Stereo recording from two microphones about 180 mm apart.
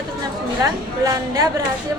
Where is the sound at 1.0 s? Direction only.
20° right (ahead or behind).